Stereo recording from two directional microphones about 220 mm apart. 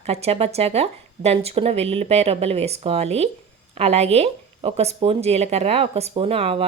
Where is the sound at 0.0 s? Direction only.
30° right (ahead or behind).